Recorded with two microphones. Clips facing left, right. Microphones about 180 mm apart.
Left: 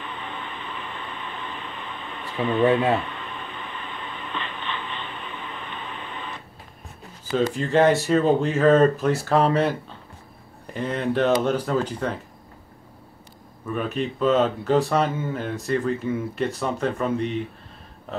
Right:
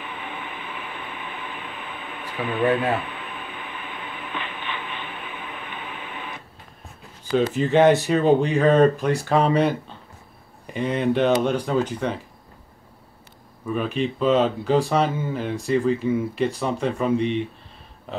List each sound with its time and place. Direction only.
0.0 s a sound: 10° right (ahead or behind)
2.4 s speech: 5° right (ahead or behind)
2.7 s speech: 25° left (ahead or behind)
3.0 s a sound: 5° right (ahead or behind)
7.5 s speech: centre (ahead or behind)
10.8 s speech: centre (ahead or behind)
13.7 s speech: centre (ahead or behind)